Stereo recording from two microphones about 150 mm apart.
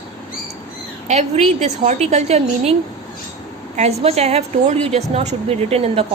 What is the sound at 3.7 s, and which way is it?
A woman's voice, 45° right (ahead or behind).